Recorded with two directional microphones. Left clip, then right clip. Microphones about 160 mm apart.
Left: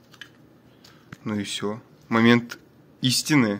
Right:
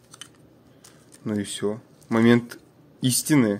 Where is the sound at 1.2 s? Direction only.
20° right (ahead or behind).